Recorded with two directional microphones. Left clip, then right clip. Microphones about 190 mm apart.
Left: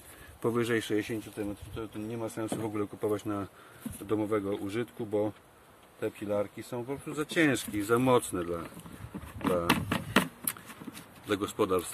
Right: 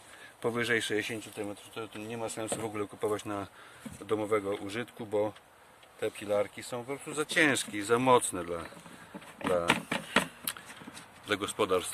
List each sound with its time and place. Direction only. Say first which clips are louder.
0.4 s speech: even; 10° right (ahead or behind)
9.8 s a sound: left 1 dB; 20° right (ahead or behind)
11.2 s speech: even; 15° right (ahead or behind)